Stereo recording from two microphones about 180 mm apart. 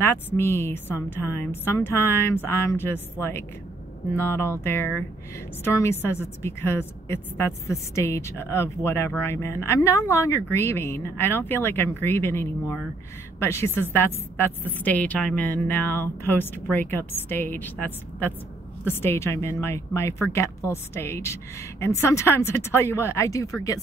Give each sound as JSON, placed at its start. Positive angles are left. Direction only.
{"t": 0.0, "sound": "a woman's voice", "side_deg": 10}